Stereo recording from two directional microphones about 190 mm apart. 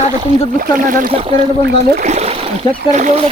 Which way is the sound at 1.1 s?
30° right (ahead or behind).